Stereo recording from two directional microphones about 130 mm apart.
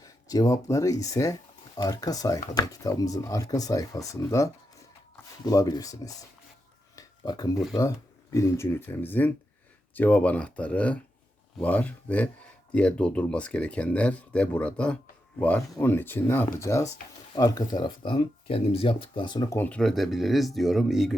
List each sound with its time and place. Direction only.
0.0 s speech: 30° left (ahead or behind)
6.9 s a sound: 30° left (ahead or behind)
7.8 s speech: 25° left (ahead or behind)
19.5 s speech: 15° left (ahead or behind); by 21.2 s centre (ahead or behind)